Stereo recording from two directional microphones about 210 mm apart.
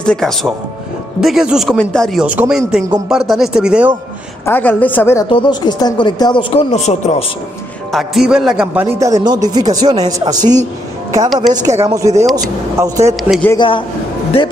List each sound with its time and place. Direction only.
0.0 s speech: 5° left (ahead or behind)
4.5 s a woman's voice: 10° left (ahead or behind); by 7.2 s 30° left (ahead or behind)
7.9 s speech: centre (ahead or behind)
9.0 s speech: 20° right (ahead or behind)
11.5 s speech: 15° right (ahead or behind)
13.3 s a woman's voice: 5° left (ahead or behind)
13.6 s speech: 25° left (ahead or behind)